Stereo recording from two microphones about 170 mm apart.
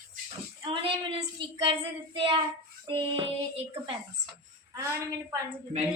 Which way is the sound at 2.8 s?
30° right (ahead or behind).